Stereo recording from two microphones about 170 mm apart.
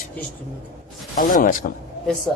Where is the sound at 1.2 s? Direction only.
55° left (ahead or behind).